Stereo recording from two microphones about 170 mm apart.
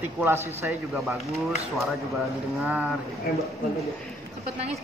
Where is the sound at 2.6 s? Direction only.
5° right (ahead or behind).